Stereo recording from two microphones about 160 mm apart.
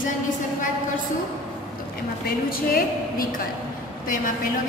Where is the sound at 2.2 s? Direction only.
65° left (ahead or behind).